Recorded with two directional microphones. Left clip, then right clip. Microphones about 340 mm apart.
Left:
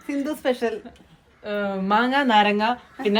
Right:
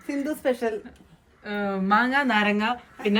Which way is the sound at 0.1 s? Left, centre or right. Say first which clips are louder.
Left 1 dB; centre.